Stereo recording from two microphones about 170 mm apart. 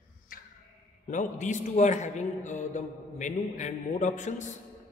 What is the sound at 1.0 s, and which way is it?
A man's voice, 45° left (ahead or behind).